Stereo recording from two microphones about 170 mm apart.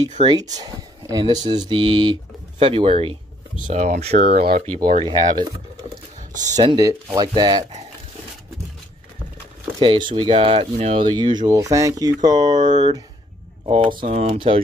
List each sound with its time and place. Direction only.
0.0 s speech: 25° right (ahead or behind)
3.6 s speech: 45° right (ahead or behind)
4.3 s speech: 65° right (ahead or behind)
4.6 s speech: 50° right (ahead or behind)
5.9 s sewing machine: 45° right (ahead or behind)
6.5 s speech: 25° right (ahead or behind)
9.8 s speech: 30° right (ahead or behind)
12.5 s speech: 45° right (ahead or behind)
13.7 s speech: 30° right (ahead or behind)
13.9 s speech: 45° right (ahead or behind)